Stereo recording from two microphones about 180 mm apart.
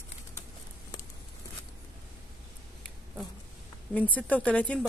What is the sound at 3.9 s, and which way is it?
Speech, 10° left (ahead or behind).